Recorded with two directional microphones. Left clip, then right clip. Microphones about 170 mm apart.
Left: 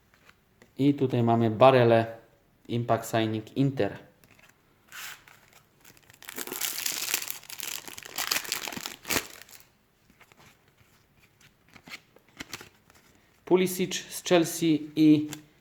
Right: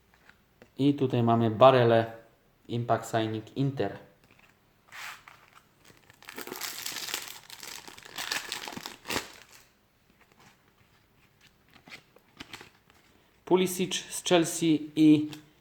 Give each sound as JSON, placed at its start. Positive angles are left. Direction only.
{"t": 0.6, "sound": "speech", "side_deg": 5}
{"t": 5.9, "sound": "crumpling", "side_deg": 15}
{"t": 13.4, "sound": "speech", "side_deg": 5}